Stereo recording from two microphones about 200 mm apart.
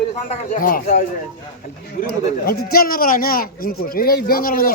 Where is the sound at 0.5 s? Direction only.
45° left (ahead or behind).